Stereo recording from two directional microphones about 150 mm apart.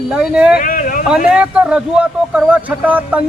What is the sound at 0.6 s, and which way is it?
Speech, 65° left (ahead or behind).